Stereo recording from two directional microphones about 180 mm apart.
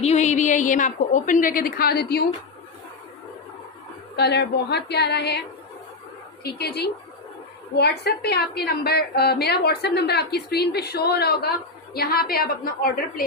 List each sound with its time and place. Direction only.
0.0 s a woman's voice: 40° left (ahead or behind); by 2.2 s 60° left (ahead or behind)
4.2 s a woman's voice: 65° left (ahead or behind)
6.4 s a woman's voice: 65° left (ahead or behind)